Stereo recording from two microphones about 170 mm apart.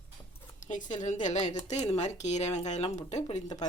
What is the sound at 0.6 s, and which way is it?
Speech, 50° left (ahead or behind).